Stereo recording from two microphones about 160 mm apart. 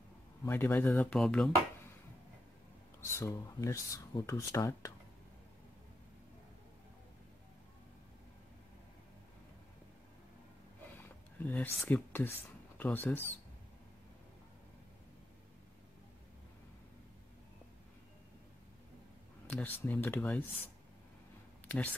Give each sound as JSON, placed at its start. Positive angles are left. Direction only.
{"t": 0.5, "sound": "speech", "side_deg": 15}
{"t": 3.0, "sound": "speech", "side_deg": 15}
{"t": 11.0, "sound": "speech", "side_deg": 15}
{"t": 19.5, "sound": "speech", "side_deg": 10}